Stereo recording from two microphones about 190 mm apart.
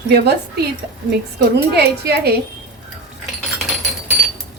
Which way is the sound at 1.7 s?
60° right (ahead or behind).